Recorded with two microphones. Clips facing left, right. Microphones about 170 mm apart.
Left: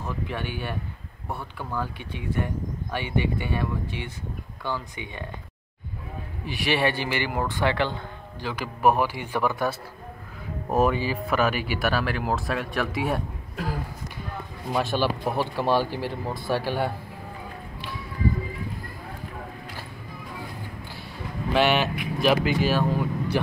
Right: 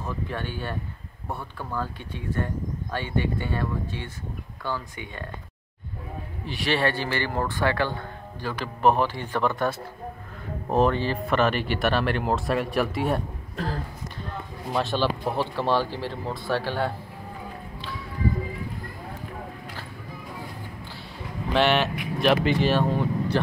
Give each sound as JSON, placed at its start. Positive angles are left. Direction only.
{"t": 0.0, "sound": "speech", "side_deg": 15}
{"t": 1.8, "sound": "speech", "side_deg": 15}
{"t": 6.4, "sound": "speech", "side_deg": 10}
{"t": 10.7, "sound": "speech", "side_deg": 10}
{"t": 21.5, "sound": "speech", "side_deg": 5}